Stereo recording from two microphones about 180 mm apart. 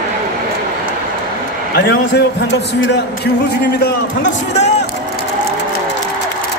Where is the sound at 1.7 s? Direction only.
80° left.